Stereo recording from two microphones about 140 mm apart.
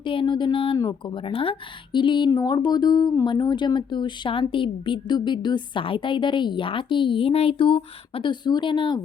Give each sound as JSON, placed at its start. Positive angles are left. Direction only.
{"t": 0.0, "sound": "a woman's voice", "side_deg": 40}